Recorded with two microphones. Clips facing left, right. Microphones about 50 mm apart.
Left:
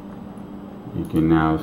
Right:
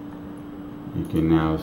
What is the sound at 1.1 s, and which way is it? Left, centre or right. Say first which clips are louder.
Speech: left 3 dB; centre.